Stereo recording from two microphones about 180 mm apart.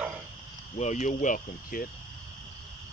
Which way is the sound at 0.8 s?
40° left (ahead or behind).